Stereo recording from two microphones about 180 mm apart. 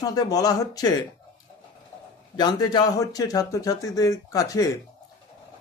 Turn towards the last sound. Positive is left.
turn(degrees=20)  # may be behind; listen again after turning